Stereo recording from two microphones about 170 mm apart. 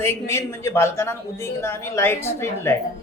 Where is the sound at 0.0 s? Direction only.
15° left (ahead or behind).